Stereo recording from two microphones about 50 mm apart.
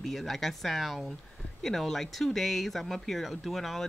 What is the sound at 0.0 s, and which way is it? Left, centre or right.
Speech, centre.